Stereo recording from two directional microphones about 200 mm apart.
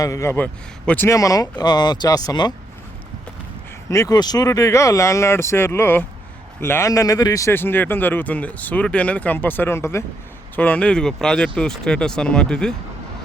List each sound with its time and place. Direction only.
0.0 s a man's voice: 15° left (ahead or behind)
3.8 s a man's voice: 15° left (ahead or behind)